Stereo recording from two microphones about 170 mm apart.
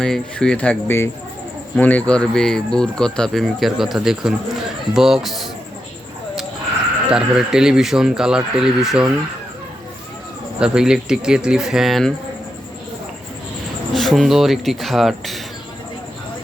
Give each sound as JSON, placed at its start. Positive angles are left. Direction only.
{"t": 0.0, "sound": "speech", "side_deg": 5}
{"t": 7.1, "sound": "speech", "side_deg": -5}
{"t": 10.6, "sound": "speech", "side_deg": -5}
{"t": 13.9, "sound": "speech", "side_deg": 0}